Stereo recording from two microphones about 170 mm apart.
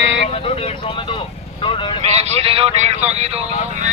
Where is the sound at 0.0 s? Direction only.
90° right.